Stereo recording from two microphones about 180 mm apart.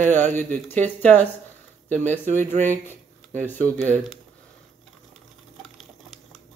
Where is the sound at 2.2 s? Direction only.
40° right (ahead or behind).